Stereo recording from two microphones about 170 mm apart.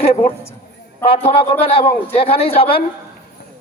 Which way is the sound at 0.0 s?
35° left (ahead or behind).